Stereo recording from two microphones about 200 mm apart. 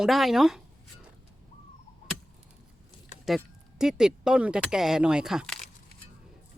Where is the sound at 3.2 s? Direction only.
Centre (ahead or behind).